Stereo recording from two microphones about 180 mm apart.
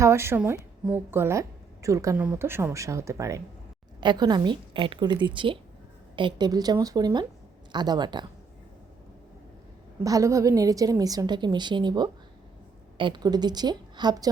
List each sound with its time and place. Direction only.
0.0 s a woman's voice: 15° right (ahead or behind)
10.0 s a woman's voice: 20° right (ahead or behind)